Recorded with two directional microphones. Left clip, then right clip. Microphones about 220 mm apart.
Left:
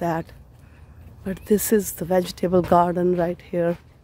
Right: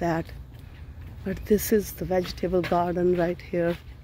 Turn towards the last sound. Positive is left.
turn(degrees=15)  # may be behind; listen again after turning